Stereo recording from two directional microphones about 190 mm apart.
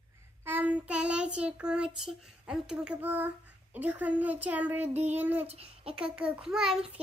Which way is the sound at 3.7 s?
10° right (ahead or behind).